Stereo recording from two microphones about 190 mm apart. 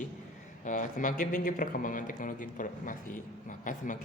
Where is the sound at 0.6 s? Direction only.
40° left (ahead or behind).